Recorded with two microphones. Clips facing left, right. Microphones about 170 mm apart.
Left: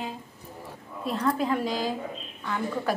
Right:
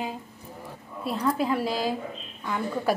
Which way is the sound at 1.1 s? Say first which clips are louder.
Even; 5° right (ahead or behind).